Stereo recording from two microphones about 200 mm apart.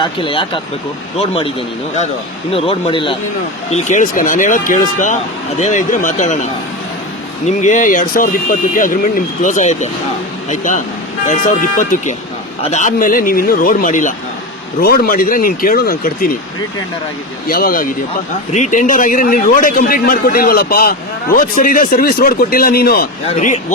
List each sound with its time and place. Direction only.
0.0 s a man's voice: 25° left (ahead or behind)
3.7 s a man's voice: 40° left (ahead or behind)
17.5 s a man's voice: 45° left (ahead or behind)
23.2 s speech: 35° left (ahead or behind)